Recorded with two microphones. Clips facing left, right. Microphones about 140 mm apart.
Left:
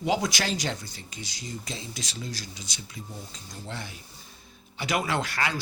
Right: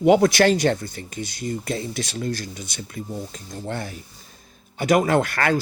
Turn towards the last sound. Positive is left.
turn(degrees=-55)  # may be behind; listen again after turning